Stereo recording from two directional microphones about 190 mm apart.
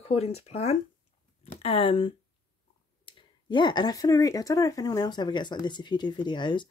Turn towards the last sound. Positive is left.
turn(degrees=25)  # may be behind; listen again after turning